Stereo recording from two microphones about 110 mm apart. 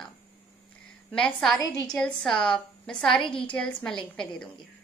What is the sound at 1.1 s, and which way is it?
A woman's voice, 10° left (ahead or behind).